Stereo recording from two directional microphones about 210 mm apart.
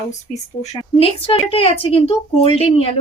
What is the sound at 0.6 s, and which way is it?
A woman's voice, 25° left (ahead or behind).